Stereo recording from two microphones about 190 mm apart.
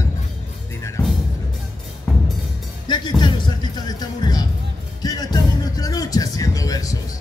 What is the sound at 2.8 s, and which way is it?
Music, 25° left (ahead or behind).